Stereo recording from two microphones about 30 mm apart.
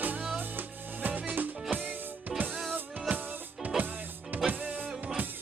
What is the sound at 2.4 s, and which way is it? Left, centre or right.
Music, right.